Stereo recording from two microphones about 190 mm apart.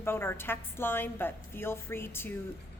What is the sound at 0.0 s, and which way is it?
A woman's voice, 10° left (ahead or behind).